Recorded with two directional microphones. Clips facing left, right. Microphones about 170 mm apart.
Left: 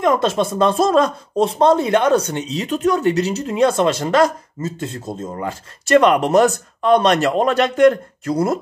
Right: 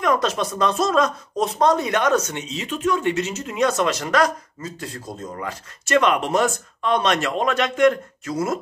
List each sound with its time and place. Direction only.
0.0 s speech: 25° left (ahead or behind)